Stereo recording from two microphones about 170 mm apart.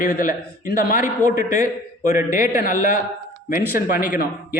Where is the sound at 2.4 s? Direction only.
55° left (ahead or behind).